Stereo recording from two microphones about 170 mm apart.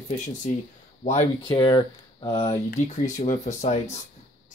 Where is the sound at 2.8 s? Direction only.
45° left (ahead or behind).